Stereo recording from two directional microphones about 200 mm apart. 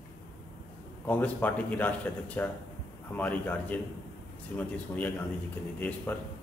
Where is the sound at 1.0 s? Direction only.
10° left (ahead or behind).